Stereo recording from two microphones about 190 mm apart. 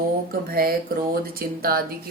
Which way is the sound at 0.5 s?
50° right (ahead or behind).